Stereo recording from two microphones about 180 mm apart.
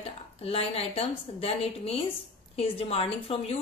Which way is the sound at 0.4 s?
35° left (ahead or behind).